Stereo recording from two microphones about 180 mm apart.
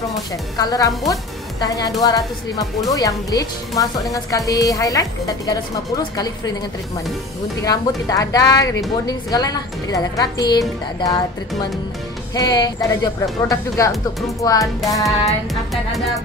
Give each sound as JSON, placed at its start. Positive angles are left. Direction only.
{"t": 0.6, "sound": "a woman's voice", "side_deg": 20}
{"t": 7.6, "sound": "a woman's voice", "side_deg": 20}
{"t": 12.4, "sound": "a woman's voice", "side_deg": 20}
{"t": 15.0, "sound": "music", "side_deg": 0}